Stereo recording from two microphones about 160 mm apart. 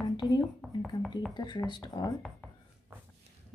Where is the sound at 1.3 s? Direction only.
30° left (ahead or behind).